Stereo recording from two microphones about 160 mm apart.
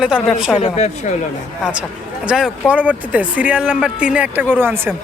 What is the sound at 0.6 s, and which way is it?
Speech, 45° left (ahead or behind).